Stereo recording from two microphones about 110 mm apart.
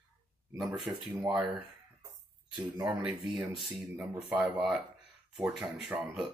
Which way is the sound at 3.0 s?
5° right (ahead or behind).